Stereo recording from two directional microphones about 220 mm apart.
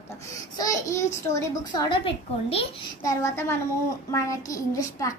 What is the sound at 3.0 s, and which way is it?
A woman's voice, 15° left (ahead or behind).